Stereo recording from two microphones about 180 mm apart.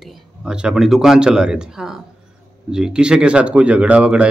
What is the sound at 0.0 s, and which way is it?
A man's voice, 5° right (ahead or behind).